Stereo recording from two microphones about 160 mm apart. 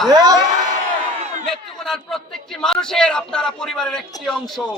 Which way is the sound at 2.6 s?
5° left (ahead or behind).